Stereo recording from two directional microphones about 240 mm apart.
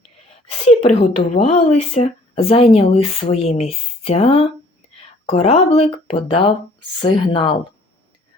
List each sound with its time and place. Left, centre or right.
0.6 s a woman's voice: left